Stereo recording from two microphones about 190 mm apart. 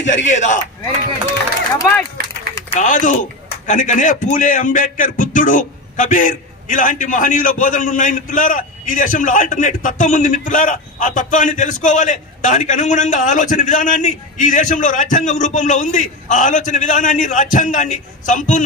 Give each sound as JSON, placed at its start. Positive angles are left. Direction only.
{"t": 0.3, "sound": "speech", "side_deg": 40}
{"t": 1.8, "sound": "speech", "side_deg": 10}
{"t": 2.8, "sound": "a man's voice", "side_deg": 40}